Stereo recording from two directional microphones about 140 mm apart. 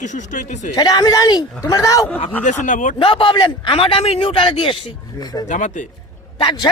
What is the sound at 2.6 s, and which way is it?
Speech, 65° left (ahead or behind).